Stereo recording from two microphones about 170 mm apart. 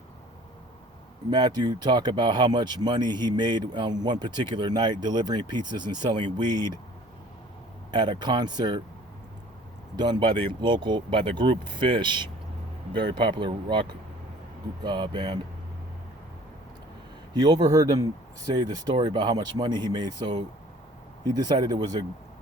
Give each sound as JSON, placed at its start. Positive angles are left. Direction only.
{"t": 1.3, "sound": "speech", "side_deg": -25}
{"t": 7.9, "sound": "speech", "side_deg": -25}
{"t": 9.9, "sound": "speech", "side_deg": -25}
{"t": 17.3, "sound": "speech", "side_deg": -25}